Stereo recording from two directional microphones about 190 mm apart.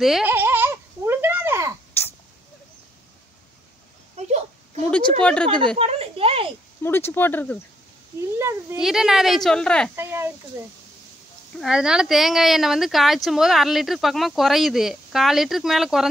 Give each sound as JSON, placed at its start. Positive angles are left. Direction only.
{"t": 0.0, "sound": "baby laughter", "side_deg": -5}
{"t": 4.2, "sound": "a sound", "side_deg": -35}
{"t": 4.9, "sound": "speech", "side_deg": 5}
{"t": 5.8, "sound": "speech", "side_deg": -30}
{"t": 6.8, "sound": "speech", "side_deg": 10}
{"t": 8.4, "sound": "speech", "side_deg": -15}
{"t": 8.8, "sound": "speech", "side_deg": 0}
{"t": 9.9, "sound": "speech", "side_deg": -10}
{"t": 11.6, "sound": "speech", "side_deg": -5}